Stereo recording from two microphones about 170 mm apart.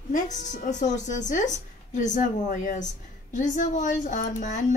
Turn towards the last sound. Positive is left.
turn(degrees=45)  # may be behind; listen again after turning